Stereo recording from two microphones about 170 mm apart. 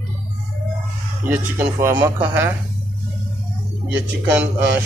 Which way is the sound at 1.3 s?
15° right (ahead or behind).